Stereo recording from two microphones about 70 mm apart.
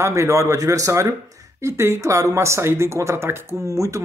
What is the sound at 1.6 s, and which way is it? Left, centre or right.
Speech, right.